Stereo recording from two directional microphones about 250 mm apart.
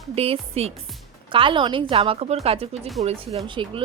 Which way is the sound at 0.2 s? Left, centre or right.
Right.